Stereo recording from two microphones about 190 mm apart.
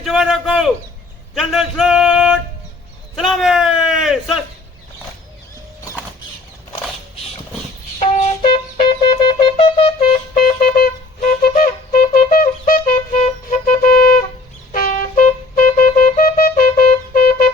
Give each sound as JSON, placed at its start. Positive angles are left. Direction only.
{"t": 0.0, "sound": "a sound", "side_deg": 0}
{"t": 3.2, "sound": "a man's voice", "side_deg": 0}
{"t": 7.9, "sound": "music", "side_deg": 40}
{"t": 8.5, "sound": "wind instrument", "side_deg": 25}
{"t": 10.3, "sound": "wind instrument", "side_deg": 50}